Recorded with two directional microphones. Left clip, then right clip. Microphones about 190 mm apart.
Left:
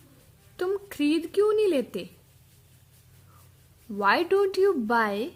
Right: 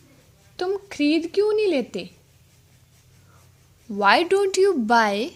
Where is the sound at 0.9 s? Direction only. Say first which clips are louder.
Right 4 dB; 15° right (ahead or behind).